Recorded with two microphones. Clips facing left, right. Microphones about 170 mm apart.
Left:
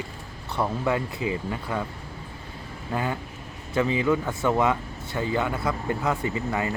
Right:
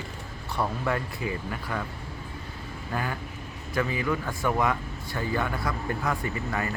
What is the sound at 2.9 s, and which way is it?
A man's voice, 20° left (ahead or behind).